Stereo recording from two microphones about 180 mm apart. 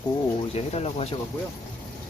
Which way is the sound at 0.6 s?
35° left (ahead or behind).